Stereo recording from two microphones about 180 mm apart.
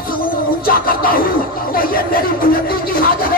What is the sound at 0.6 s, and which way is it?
Music, 55° left (ahead or behind).